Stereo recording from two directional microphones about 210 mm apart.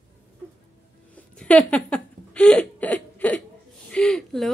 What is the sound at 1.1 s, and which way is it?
Speech, 5° left (ahead or behind).